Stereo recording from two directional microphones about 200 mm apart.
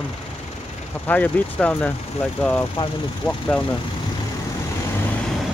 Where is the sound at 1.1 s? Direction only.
5° left (ahead or behind).